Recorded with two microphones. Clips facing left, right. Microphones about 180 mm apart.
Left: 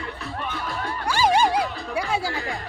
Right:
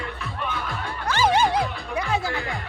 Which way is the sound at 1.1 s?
10° left (ahead or behind).